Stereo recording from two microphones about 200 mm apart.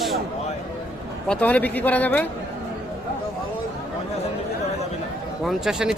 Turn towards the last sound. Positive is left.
turn(degrees=-5)  # may be behind; listen again after turning